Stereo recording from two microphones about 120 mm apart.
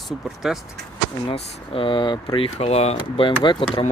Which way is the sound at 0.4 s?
5° right (ahead or behind).